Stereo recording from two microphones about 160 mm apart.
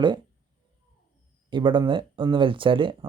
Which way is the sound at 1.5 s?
30° right (ahead or behind).